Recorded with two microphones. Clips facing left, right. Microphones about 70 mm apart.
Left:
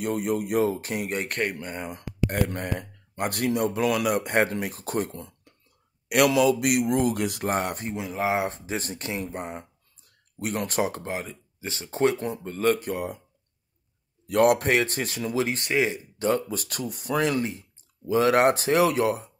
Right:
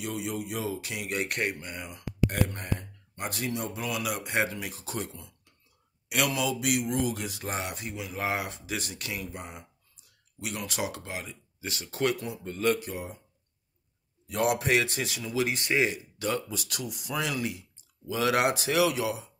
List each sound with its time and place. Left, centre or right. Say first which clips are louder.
0.0 s speech: left 7 dB; left
1.2 s speech: left 2 dB; centre
1.6 s speech: left 5 dB; left
6.0 s speech: left 9 dB; left
8.1 s speech: left 6 dB; centre
8.5 s speech: left 5 dB; left
12.2 s speech: left 4 dB; left
12.8 s speech: left 7 dB; left
14.2 s speech: left 7 dB; left